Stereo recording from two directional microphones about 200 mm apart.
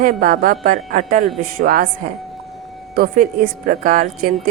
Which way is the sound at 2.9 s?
45° right (ahead or behind).